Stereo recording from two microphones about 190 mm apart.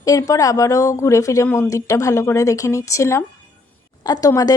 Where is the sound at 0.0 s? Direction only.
20° left (ahead or behind).